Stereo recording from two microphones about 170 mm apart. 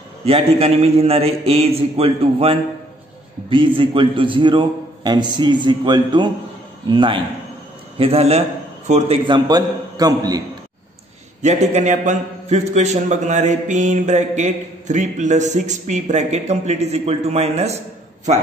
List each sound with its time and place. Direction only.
0.2 s a man's voice: 35° right (ahead or behind)
9.2 s a man's voice: 25° right (ahead or behind)
11.4 s a man's voice: 45° right (ahead or behind)